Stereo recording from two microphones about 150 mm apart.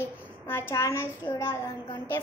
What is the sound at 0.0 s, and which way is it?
A child's voice, 15° left (ahead or behind).